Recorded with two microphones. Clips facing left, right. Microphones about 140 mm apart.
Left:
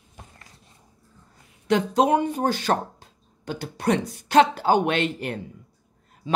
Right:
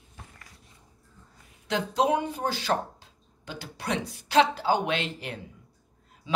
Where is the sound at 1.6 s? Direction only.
55° left (ahead or behind).